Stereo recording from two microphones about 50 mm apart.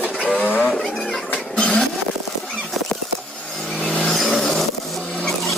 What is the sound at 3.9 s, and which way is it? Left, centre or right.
Vehicle, centre.